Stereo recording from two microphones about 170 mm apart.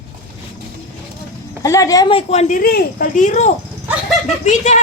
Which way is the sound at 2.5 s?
60° left (ahead or behind).